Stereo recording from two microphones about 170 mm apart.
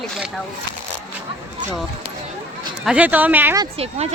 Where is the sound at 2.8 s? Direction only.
5° right (ahead or behind).